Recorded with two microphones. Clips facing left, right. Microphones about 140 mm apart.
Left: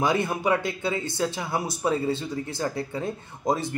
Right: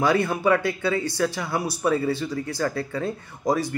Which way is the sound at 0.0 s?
20° left (ahead or behind).